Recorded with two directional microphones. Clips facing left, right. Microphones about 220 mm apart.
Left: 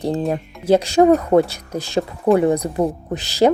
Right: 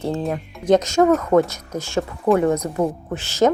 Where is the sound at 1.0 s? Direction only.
35° left (ahead or behind).